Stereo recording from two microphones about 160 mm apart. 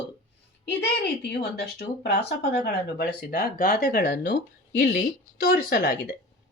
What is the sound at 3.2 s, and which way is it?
Speech, 70° left (ahead or behind).